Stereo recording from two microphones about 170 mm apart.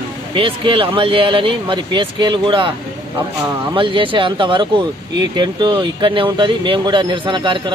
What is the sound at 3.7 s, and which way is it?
Speech, 30° right (ahead or behind).